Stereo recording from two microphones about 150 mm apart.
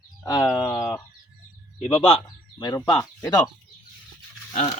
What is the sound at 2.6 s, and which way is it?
Speech, 25° left (ahead or behind).